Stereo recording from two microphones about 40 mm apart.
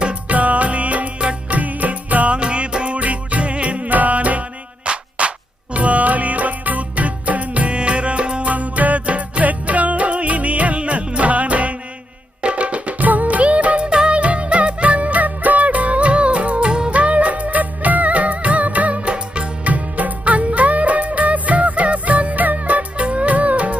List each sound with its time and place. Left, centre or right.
0.0 s music: right
2.3 s music: right
16.9 s music of bollywood: right
19.1 s music: right